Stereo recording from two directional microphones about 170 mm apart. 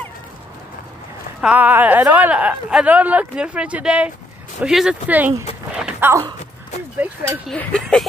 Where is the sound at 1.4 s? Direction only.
10° right (ahead or behind).